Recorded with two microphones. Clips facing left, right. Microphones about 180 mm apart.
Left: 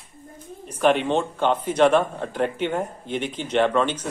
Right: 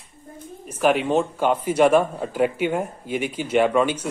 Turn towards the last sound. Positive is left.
turn(degrees=-10)  # may be behind; listen again after turning